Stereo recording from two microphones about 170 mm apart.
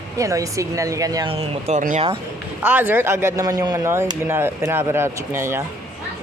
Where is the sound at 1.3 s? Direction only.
40° right (ahead or behind).